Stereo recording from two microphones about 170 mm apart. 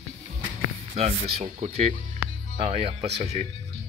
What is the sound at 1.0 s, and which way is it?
Speech, 35° right (ahead or behind).